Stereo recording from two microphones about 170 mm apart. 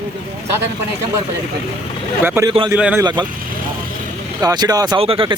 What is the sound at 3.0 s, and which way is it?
Speech, 25° right (ahead or behind).